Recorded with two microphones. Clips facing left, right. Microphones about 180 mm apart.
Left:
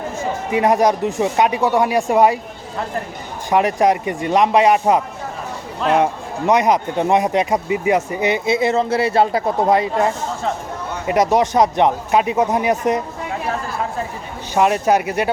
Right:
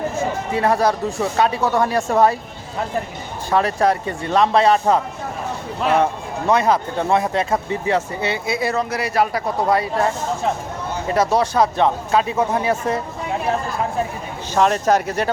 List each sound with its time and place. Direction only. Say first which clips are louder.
0.5 s speech: left 3 dB; 15° left (ahead or behind)
3.5 s speech: left 2 dB; 15° left (ahead or behind)
11.1 s speech: left 3 dB; 15° left (ahead or behind)
14.5 s speech: left 1 dB; 10° left (ahead or behind)